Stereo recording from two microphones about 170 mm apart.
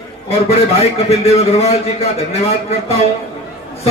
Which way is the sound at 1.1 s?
40° left (ahead or behind).